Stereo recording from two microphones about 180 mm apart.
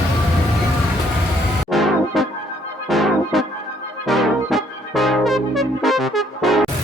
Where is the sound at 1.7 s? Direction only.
Centre (ahead or behind).